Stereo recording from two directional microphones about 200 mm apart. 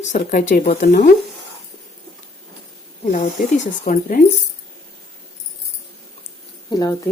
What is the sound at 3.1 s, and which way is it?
Speech, 35° left (ahead or behind).